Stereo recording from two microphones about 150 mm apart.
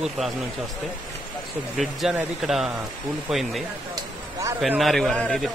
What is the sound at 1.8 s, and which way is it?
A man's voice, 5° right (ahead or behind).